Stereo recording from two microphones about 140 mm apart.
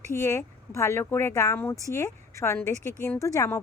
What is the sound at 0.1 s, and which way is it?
A woman's voice, 20° left (ahead or behind).